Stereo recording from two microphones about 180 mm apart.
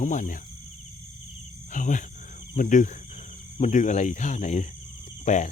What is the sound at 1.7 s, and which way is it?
Speech, 45° left (ahead or behind).